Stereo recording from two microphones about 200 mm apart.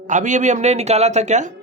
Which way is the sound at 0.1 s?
40° right (ahead or behind).